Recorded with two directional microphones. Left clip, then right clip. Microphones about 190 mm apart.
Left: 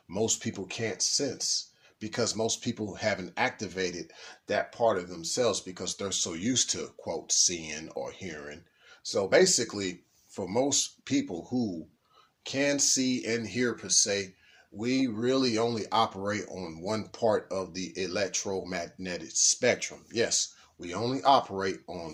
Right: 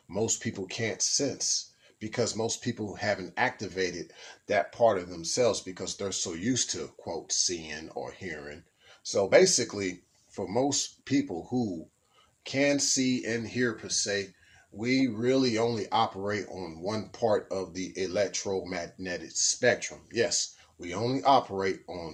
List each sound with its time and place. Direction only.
0.1 s speech: 25° left (ahead or behind)
9.0 s speech: 15° left (ahead or behind)
10.3 s speech: 30° left (ahead or behind)
12.4 s speech: 20° left (ahead or behind); by 14.3 s 40° left (ahead or behind)
14.8 s speech: 20° left (ahead or behind)